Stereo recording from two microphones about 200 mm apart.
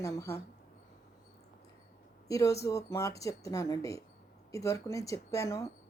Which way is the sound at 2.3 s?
15° left (ahead or behind).